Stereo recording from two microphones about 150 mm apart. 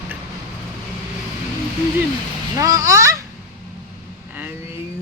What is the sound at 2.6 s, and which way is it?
Speech, 20° right (ahead or behind).